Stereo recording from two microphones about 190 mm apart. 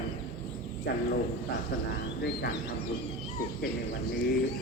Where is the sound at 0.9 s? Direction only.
60° left (ahead or behind).